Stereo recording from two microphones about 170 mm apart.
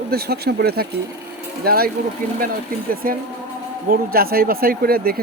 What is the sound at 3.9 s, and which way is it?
Speech, 60° right (ahead or behind).